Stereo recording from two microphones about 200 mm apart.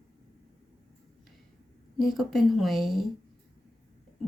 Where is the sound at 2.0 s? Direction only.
Centre (ahead or behind).